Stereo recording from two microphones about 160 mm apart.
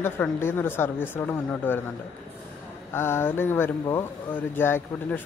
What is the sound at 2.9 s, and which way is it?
A man's voice, 15° left (ahead or behind).